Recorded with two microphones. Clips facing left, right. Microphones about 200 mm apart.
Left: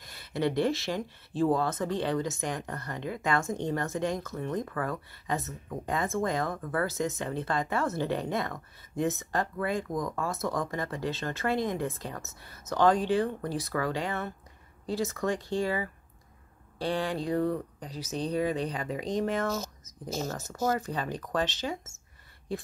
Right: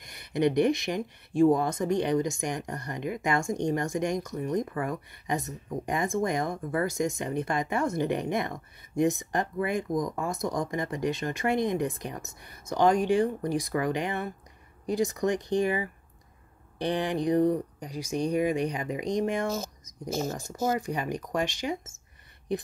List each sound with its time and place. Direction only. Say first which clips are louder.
0.0 s speech: right 4 dB; 15° right (ahead or behind)